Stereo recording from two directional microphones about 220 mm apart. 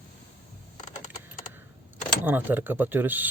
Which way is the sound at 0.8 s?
35° left (ahead or behind).